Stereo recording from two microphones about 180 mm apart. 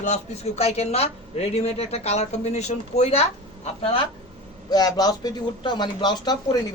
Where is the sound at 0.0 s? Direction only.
40° left (ahead or behind).